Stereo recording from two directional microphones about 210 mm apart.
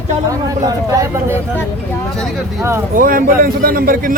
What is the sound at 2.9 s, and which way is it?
A man's voice, 40° right (ahead or behind).